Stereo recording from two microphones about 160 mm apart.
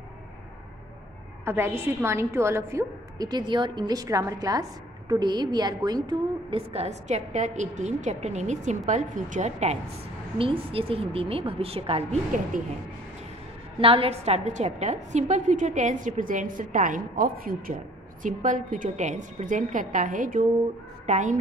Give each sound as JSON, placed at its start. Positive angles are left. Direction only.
{"t": 1.4, "sound": "a woman's voice", "side_deg": -15}
{"t": 6.0, "sound": "a woman's voice", "side_deg": -35}
{"t": 10.3, "sound": "a woman's voice", "side_deg": -35}
{"t": 13.7, "sound": "a woman's voice", "side_deg": -35}
{"t": 18.2, "sound": "a woman's voice", "side_deg": -50}